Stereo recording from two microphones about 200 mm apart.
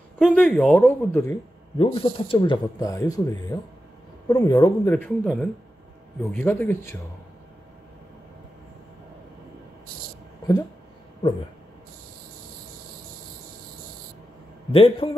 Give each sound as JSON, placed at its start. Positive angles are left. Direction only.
{"t": 0.2, "sound": "speech", "side_deg": 0}
{"t": 1.8, "sound": "speech", "side_deg": 25}
{"t": 14.7, "sound": "speech", "side_deg": 30}